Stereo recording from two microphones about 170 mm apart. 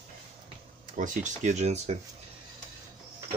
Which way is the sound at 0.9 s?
50° right (ahead or behind).